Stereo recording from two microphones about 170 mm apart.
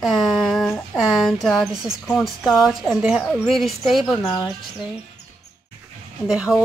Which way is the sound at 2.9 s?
10° right (ahead or behind).